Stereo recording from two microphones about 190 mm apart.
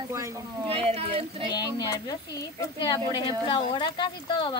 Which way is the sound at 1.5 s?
20° left (ahead or behind).